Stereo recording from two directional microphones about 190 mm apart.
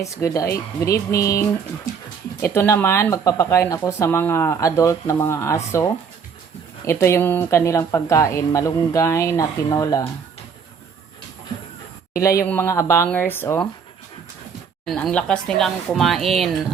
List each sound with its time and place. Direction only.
0.0 s speech: 15° left (ahead or behind)
6.8 s speech: 15° left (ahead or behind)
12.2 s speech: 15° left (ahead or behind)
14.8 s speech: 5° left (ahead or behind)